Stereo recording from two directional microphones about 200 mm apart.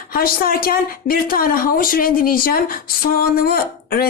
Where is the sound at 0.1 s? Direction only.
45° left (ahead or behind).